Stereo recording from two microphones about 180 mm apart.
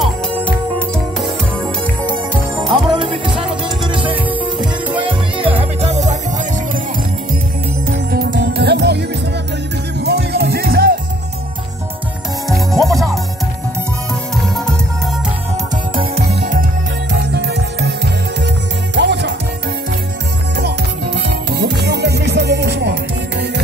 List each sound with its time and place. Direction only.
0.0 s music: 5° left (ahead or behind)
2.9 s music: 25° right (ahead or behind)
7.8 s music: 60° right (ahead or behind)
12.4 s music: centre (ahead or behind)
17.1 s music: 70° right (ahead or behind)
20.5 s music: 70° right (ahead or behind)